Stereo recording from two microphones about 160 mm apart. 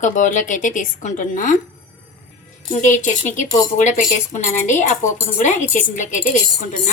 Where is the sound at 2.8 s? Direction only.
50° left (ahead or behind).